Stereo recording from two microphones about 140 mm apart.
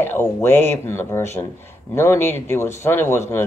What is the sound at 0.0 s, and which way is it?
Speech, 15° left (ahead or behind).